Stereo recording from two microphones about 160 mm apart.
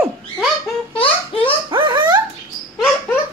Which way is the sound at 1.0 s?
35° left (ahead or behind).